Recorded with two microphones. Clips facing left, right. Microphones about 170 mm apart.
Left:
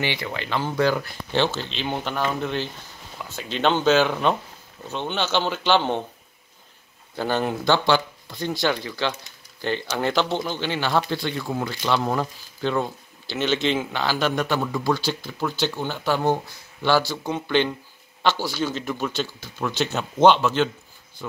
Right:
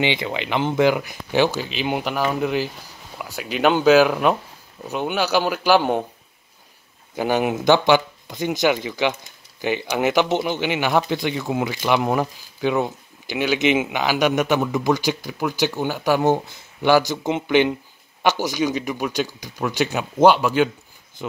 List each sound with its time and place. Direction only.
0.0 s speech: 20° right (ahead or behind)
7.2 s speech: 15° right (ahead or behind)